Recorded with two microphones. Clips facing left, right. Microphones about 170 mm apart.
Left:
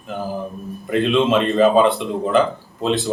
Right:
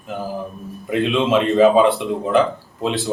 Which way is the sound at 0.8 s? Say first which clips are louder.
Left 1 dB; 5° right (ahead or behind).